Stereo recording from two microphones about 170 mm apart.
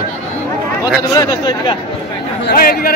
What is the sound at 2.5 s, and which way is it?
Speech, 60° left (ahead or behind).